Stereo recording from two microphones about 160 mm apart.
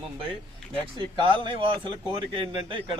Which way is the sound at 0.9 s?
30° right (ahead or behind).